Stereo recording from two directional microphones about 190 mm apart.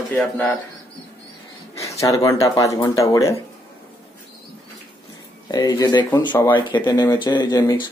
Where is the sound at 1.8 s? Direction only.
15° left (ahead or behind).